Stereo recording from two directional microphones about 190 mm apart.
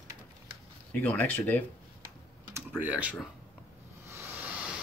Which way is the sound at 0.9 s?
5° left (ahead or behind).